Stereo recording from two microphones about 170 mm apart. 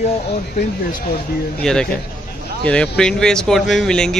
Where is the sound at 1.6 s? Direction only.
5° left (ahead or behind).